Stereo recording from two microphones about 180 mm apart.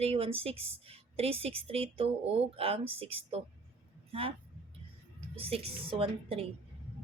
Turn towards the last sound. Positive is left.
turn(degrees=-30)  # may be behind; listen again after turning